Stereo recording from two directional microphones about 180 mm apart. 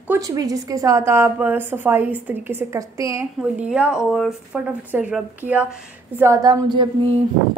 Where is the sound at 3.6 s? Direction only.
5° right (ahead or behind); by 6.9 s 20° right (ahead or behind).